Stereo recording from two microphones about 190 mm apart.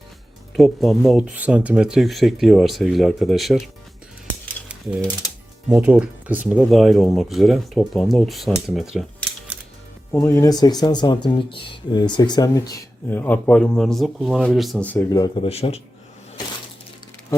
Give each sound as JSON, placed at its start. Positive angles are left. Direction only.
{"t": 0.5, "sound": "speech", "side_deg": 0}
{"t": 5.6, "sound": "speech", "side_deg": -5}
{"t": 10.2, "sound": "speech", "side_deg": 15}
{"t": 15.4, "sound": "speech", "side_deg": 30}